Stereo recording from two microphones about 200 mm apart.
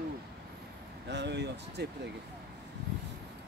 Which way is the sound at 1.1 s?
60° right (ahead or behind).